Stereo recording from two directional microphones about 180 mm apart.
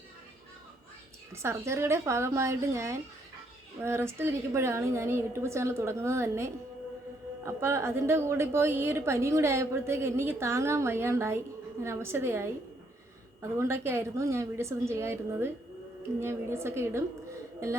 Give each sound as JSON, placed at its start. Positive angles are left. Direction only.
{"t": 1.3, "sound": "a woman's voice", "side_deg": -15}
{"t": 13.6, "sound": "a woman's voice", "side_deg": -15}